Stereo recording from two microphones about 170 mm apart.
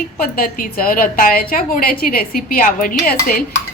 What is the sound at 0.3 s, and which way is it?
A woman's voice, 60° left (ahead or behind).